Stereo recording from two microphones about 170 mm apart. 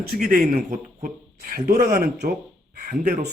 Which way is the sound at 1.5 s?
65° right (ahead or behind).